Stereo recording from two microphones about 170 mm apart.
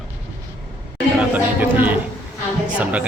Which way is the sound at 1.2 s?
10° right (ahead or behind).